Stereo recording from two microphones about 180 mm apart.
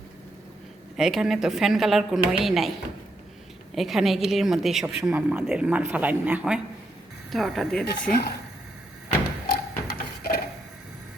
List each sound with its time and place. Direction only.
0.9 s a woman's voice: 5° right (ahead or behind)
3.8 s a woman's voice: centre (ahead or behind)
7.9 s speech: 60° left (ahead or behind)
9.8 s a sound: 55° left (ahead or behind)